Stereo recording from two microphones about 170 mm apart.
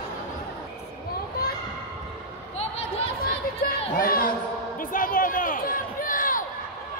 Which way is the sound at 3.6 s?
60° left (ahead or behind).